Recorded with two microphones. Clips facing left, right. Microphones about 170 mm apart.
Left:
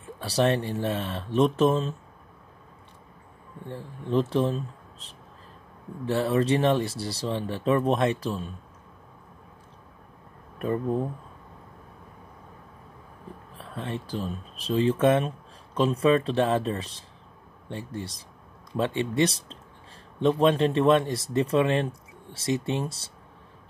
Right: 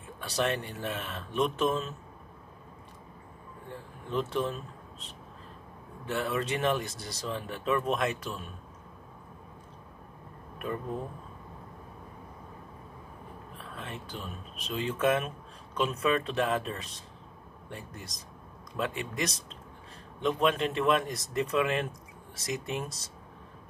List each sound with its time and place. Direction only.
0.2 s speech: 35° left (ahead or behind)
3.6 s speech: 30° left (ahead or behind)
6.0 s speech: 30° left (ahead or behind)
13.6 s speech: 30° left (ahead or behind)